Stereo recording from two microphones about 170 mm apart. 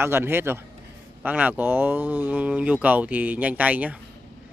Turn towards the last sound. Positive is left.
turn(degrees=-10)  # may be behind; listen again after turning